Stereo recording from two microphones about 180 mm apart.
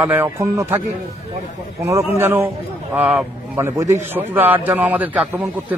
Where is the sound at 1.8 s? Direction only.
15° right (ahead or behind).